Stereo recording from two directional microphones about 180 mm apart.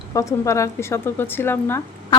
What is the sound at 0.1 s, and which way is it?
A woman's voice, 15° left (ahead or behind).